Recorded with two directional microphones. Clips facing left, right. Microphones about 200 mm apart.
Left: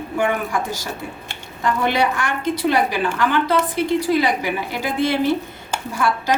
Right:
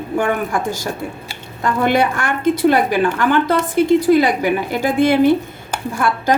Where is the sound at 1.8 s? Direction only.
50° right (ahead or behind).